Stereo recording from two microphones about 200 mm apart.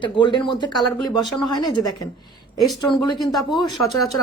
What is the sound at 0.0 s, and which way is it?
Speech, 25° left (ahead or behind).